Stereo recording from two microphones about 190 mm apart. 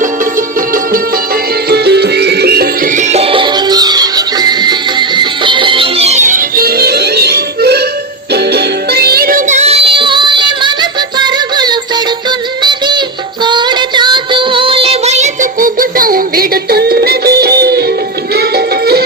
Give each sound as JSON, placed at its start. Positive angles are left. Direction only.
{"t": 1.7, "sound": "music", "side_deg": -60}
{"t": 13.4, "sound": "music", "side_deg": -25}